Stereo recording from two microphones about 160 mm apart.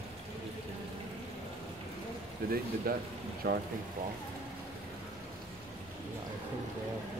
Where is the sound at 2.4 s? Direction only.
70° right (ahead or behind).